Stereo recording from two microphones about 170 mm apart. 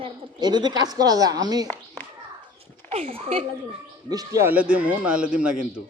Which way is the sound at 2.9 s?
35° right (ahead or behind).